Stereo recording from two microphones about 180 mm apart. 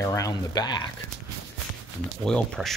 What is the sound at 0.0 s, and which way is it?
Speech, 15° left (ahead or behind).